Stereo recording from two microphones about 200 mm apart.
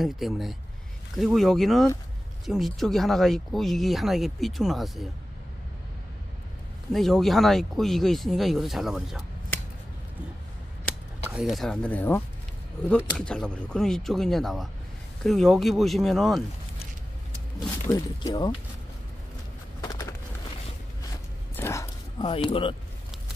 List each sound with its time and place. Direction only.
0.0 s speech: centre (ahead or behind)
6.9 s speech: centre (ahead or behind)
11.2 s speech: 5° right (ahead or behind)
17.9 s speech: 20° left (ahead or behind)
19.8 s a sound: 15° left (ahead or behind)
21.5 s a sound: 15° left (ahead or behind)
22.3 s speech: 25° left (ahead or behind)